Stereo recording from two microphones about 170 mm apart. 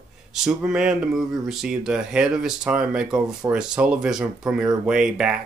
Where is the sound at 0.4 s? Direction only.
5° right (ahead or behind).